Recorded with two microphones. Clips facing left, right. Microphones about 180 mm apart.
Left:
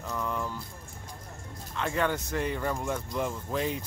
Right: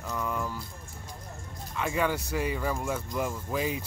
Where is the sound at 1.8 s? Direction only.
5° right (ahead or behind).